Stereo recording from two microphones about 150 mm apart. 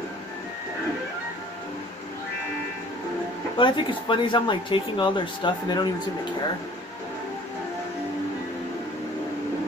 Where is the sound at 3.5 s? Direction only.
30° left (ahead or behind).